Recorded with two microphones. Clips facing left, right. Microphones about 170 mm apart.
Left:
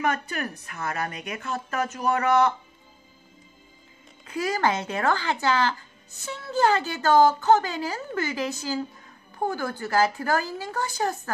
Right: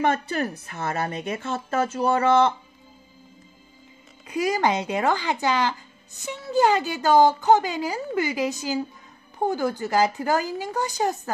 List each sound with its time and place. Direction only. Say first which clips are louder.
0.0 s a woman's voice: right 4 dB; 30° right (ahead or behind)
4.3 s speech: right 2 dB; 15° right (ahead or behind)